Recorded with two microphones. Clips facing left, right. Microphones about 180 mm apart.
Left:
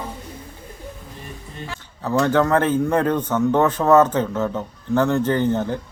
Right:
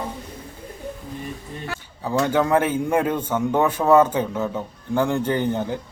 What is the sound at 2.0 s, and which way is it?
A man's voice, 10° right (ahead or behind).